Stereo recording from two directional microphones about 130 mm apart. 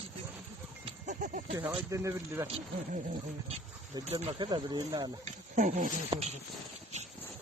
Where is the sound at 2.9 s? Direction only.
70° right (ahead or behind).